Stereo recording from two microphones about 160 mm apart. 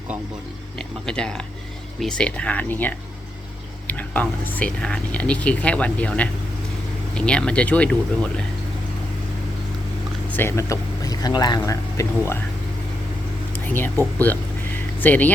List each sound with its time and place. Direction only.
1.0 s speech: 5° left (ahead or behind)
10.2 s speech: 15° left (ahead or behind)
13.5 s a sound: 10° left (ahead or behind)
14.3 s speech: 10° left (ahead or behind)